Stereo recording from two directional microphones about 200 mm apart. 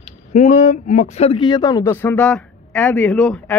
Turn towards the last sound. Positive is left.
turn(degrees=5)  # may be behind; listen again after turning